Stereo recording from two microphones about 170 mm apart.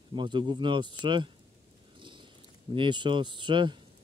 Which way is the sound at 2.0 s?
30° right (ahead or behind).